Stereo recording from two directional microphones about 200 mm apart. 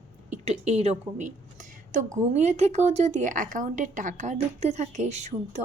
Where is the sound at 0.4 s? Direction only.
35° right (ahead or behind).